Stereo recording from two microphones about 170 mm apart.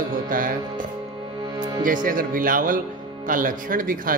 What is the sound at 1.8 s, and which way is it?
Speech, 50° right (ahead or behind).